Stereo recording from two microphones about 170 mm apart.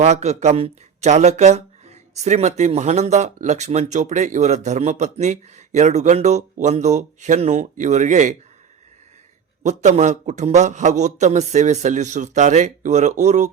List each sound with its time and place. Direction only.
0.0 s speech: 40° right (ahead or behind)
9.6 s speech: 45° right (ahead or behind)